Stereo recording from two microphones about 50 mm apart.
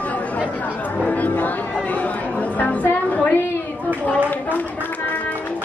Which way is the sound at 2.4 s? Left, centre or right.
Left.